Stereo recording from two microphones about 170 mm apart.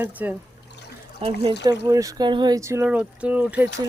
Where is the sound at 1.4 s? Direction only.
25° right (ahead or behind); by 3.6 s 10° right (ahead or behind).